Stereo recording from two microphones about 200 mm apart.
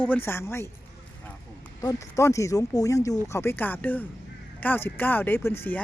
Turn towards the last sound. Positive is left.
turn(degrees=10)  # may be behind; listen again after turning